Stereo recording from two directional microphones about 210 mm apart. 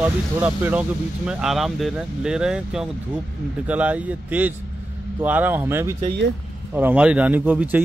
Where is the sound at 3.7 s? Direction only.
5° right (ahead or behind).